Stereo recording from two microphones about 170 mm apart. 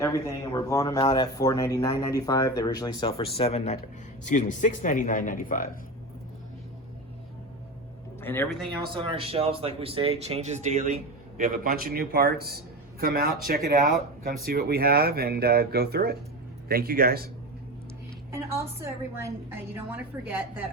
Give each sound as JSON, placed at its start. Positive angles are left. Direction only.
{"t": 0.0, "sound": "speech", "side_deg": 20}
{"t": 8.2, "sound": "speech", "side_deg": 10}
{"t": 8.4, "sound": "speech", "side_deg": 0}
{"t": 9.0, "sound": "speech", "side_deg": -30}
{"t": 11.3, "sound": "speech", "side_deg": -55}
{"t": 18.3, "sound": "a woman's voice", "side_deg": -15}